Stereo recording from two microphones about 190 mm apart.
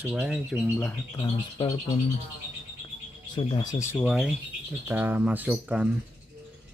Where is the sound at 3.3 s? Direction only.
20° left (ahead or behind).